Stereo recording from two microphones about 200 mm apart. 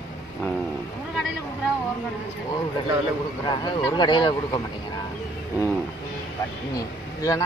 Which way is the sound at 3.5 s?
20° left (ahead or behind).